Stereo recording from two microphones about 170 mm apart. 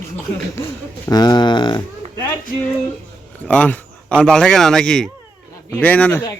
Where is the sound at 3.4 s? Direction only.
10° left (ahead or behind).